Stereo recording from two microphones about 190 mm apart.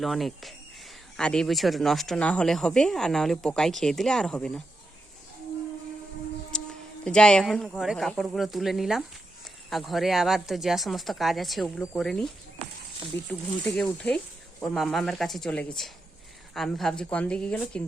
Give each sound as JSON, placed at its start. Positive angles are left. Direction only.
{"t": 0.0, "sound": "speech", "side_deg": 0}
{"t": 6.5, "sound": "music", "side_deg": 5}
{"t": 7.0, "sound": "speech", "side_deg": 5}
{"t": 13.1, "sound": "speech", "side_deg": 15}